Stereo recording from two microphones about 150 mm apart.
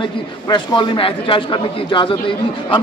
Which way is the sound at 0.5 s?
30° left (ahead or behind).